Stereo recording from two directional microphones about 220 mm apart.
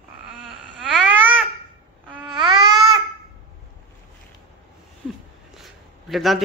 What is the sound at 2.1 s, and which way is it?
Babbling, 20° right (ahead or behind).